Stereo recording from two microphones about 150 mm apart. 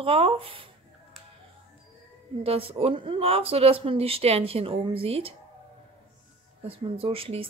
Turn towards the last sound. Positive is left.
turn(degrees=-40)  # may be behind; listen again after turning